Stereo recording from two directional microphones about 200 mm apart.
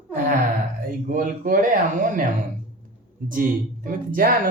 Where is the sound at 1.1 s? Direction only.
45° right (ahead or behind).